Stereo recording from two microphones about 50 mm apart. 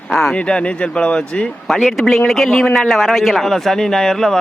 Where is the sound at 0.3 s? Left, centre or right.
Left.